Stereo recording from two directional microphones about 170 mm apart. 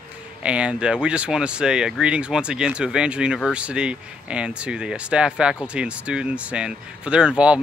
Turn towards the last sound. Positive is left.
turn(degrees=-5)  # may be behind; listen again after turning